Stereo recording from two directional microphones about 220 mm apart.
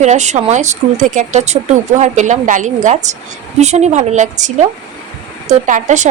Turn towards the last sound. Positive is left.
turn(degrees=-35)  # may be behind; listen again after turning